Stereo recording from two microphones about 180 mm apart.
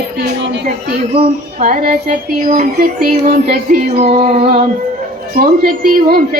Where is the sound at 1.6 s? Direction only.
50° right (ahead or behind).